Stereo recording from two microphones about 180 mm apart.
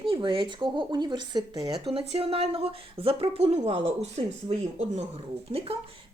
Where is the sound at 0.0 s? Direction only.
30° right (ahead or behind).